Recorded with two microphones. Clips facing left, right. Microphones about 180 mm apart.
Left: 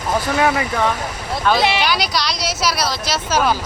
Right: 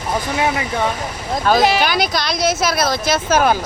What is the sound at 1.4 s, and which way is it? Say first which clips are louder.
Speech: right 2 dB; 40° right (ahead or behind).